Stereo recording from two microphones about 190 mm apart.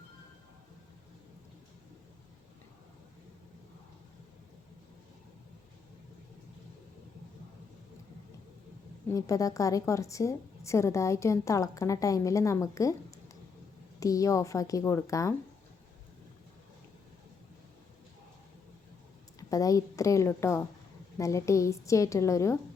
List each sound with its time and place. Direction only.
9.1 s a woman's voice: 15° left (ahead or behind)
19.4 s a woman's voice: 20° left (ahead or behind)